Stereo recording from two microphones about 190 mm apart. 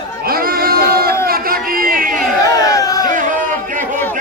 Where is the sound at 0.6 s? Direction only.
50° right (ahead or behind).